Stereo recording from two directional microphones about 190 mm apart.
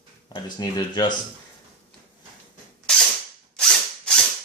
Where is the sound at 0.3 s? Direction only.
20° left (ahead or behind).